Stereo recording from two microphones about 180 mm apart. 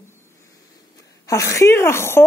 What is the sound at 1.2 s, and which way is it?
Speech, 15° left (ahead or behind).